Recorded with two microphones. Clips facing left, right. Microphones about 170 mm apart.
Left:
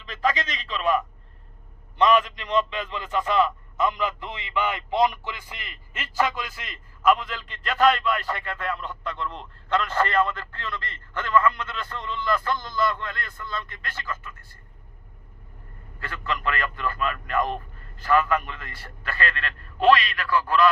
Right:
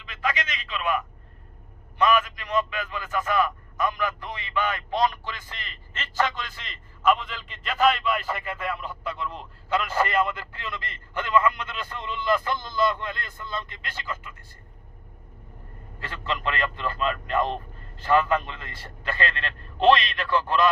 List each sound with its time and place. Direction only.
0.0 s a sound: 40° left (ahead or behind)
2.0 s a man's voice: 30° left (ahead or behind); by 14.3 s 20° right (ahead or behind)
16.0 s a man's voice: 25° right (ahead or behind)